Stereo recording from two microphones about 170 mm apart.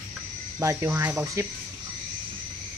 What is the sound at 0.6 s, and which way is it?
Speech, 15° right (ahead or behind).